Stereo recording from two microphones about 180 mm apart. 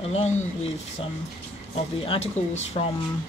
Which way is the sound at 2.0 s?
35° left (ahead or behind).